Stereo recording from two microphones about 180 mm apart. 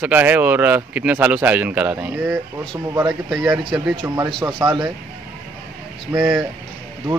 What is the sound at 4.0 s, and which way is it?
Speech, 30° right (ahead or behind).